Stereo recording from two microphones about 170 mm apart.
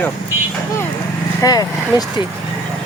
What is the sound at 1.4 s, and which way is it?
Speech, 20° left (ahead or behind).